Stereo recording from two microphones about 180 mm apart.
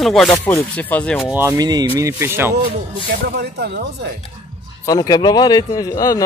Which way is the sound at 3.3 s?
65° right (ahead or behind).